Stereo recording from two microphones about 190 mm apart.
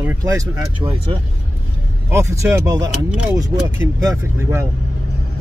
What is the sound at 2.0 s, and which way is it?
Speech, 15° right (ahead or behind).